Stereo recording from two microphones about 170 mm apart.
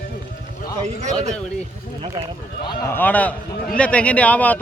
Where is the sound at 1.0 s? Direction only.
40° right (ahead or behind).